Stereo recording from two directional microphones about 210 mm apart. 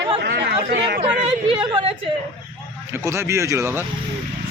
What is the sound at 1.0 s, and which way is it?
Speech, 25° right (ahead or behind).